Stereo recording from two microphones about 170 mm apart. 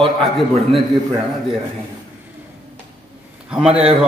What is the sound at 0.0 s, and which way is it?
A man's voice, centre (ahead or behind).